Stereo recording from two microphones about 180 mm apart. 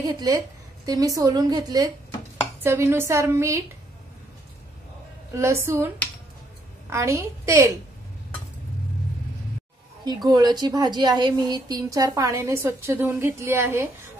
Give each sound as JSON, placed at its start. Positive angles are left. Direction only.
{"t": 0.0, "sound": "a woman's voice", "side_deg": -20}
{"t": 5.3, "sound": "a woman's voice", "side_deg": -15}
{"t": 6.9, "sound": "a woman's voice", "side_deg": -15}
{"t": 10.0, "sound": "a woman's voice", "side_deg": -20}